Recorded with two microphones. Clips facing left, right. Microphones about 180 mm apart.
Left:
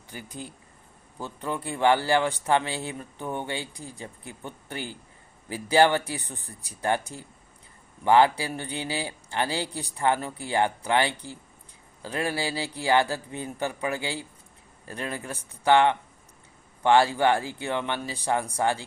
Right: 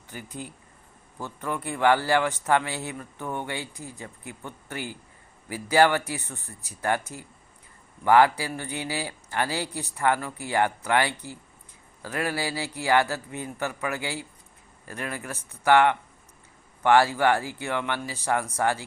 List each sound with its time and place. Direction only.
0.2 s speech: 10° right (ahead or behind)
1.6 s a man's voice: 25° left (ahead or behind)